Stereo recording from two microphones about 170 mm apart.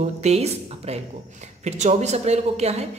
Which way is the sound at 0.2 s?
40° right (ahead or behind).